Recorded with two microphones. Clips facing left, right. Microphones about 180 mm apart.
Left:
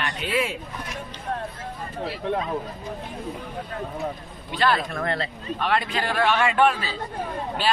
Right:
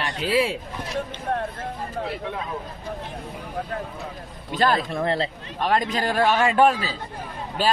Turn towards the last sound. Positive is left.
turn(degrees=-40)  # may be behind; listen again after turning